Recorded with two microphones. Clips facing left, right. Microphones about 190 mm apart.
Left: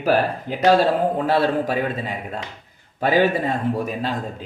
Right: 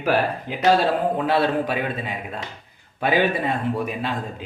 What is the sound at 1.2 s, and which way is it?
Speech, 40° left (ahead or behind).